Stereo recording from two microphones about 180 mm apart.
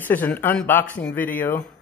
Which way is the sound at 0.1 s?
10° left (ahead or behind).